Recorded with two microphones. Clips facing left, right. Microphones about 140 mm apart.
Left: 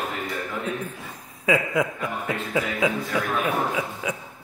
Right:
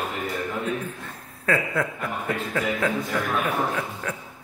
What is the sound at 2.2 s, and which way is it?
Speech, 10° left (ahead or behind).